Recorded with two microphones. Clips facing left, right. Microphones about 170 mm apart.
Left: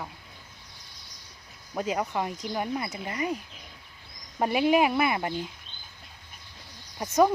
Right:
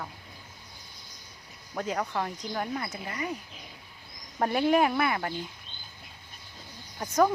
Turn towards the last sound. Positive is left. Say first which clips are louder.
# left 2 dB
turn(degrees=15)  # may be behind; listen again after turning